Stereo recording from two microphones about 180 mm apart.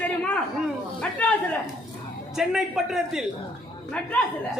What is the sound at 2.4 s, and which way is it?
Speech, centre (ahead or behind).